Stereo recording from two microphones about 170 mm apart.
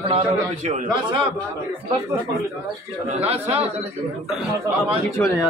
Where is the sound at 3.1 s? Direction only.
40° right (ahead or behind).